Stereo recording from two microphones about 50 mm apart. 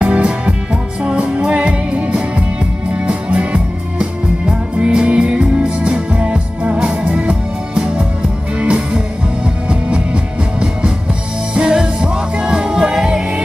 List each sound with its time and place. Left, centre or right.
0.0 s music: right